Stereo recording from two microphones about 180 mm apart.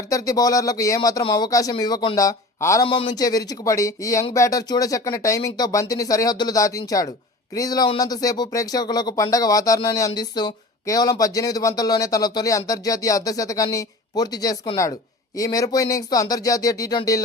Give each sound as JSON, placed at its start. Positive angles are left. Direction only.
{"t": 0.1, "sound": "speech", "side_deg": 20}
{"t": 2.8, "sound": "speech", "side_deg": 30}